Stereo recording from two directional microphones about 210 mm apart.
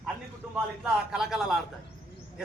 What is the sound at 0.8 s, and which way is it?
Speech, 5° right (ahead or behind).